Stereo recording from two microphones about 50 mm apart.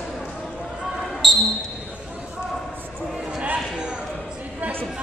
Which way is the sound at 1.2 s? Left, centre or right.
Centre.